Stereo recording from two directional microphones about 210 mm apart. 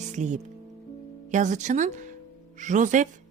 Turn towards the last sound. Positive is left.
turn(degrees=-35)  # may be behind; listen again after turning